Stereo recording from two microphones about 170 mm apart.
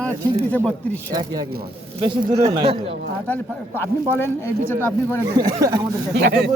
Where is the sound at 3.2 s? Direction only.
10° left (ahead or behind).